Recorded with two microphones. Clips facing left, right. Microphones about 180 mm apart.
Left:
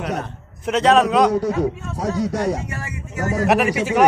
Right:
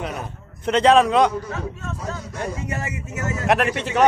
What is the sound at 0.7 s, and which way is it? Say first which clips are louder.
Speech: even; centre (ahead or behind).